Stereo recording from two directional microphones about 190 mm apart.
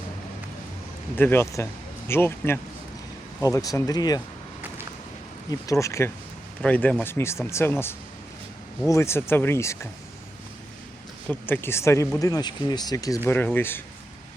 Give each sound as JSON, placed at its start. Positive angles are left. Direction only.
{"t": 1.1, "sound": "speech", "side_deg": 10}
{"t": 5.5, "sound": "speech", "side_deg": 15}
{"t": 11.3, "sound": "speech", "side_deg": 10}